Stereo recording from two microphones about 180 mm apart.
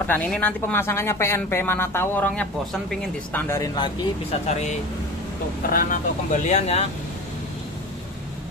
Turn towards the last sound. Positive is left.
turn(degrees=40)  # may be behind; listen again after turning